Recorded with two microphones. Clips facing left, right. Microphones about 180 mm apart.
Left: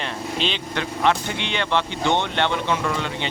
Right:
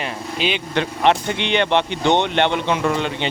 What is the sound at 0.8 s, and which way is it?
Speech, 20° right (ahead or behind).